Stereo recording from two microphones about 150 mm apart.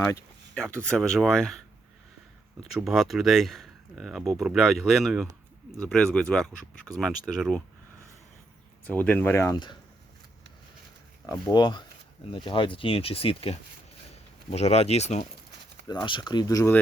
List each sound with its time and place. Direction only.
0.9 s speech: 5° left (ahead or behind)
2.7 s speech: centre (ahead or behind)
8.8 s speech: 10° left (ahead or behind)
11.3 s speech: 25° left (ahead or behind); by 15.2 s 45° left (ahead or behind)
15.9 s speech: 30° left (ahead or behind)